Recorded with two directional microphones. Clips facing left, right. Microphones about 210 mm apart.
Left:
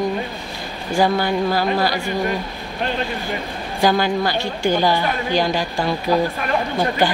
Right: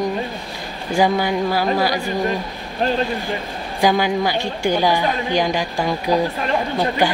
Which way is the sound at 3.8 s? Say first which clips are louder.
Even; 15° right (ahead or behind).